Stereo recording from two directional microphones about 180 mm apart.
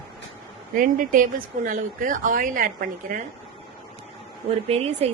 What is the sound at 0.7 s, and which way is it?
A woman's voice, 50° right (ahead or behind).